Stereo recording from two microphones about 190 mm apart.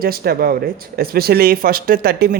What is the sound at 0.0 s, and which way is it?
Speech, 50° right (ahead or behind).